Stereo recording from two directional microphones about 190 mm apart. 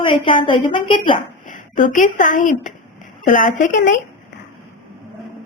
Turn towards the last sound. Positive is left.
turn(degrees=40)  # may be behind; listen again after turning